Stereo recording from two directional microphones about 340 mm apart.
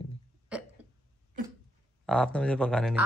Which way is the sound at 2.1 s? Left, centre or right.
Centre.